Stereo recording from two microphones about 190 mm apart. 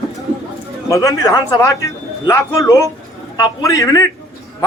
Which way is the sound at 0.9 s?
15° left (ahead or behind).